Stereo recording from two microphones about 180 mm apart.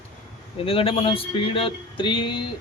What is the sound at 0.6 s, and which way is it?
Speech, 30° left (ahead or behind).